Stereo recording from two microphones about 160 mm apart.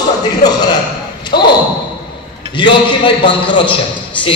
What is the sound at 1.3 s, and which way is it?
Speech, 85° left.